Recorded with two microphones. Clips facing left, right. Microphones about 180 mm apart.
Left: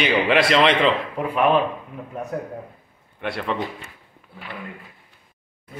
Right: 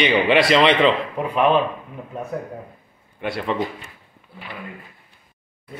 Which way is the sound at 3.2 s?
Centre (ahead or behind).